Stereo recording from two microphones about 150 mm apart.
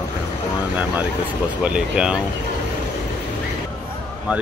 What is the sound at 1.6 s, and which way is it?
Speech, 5° right (ahead or behind).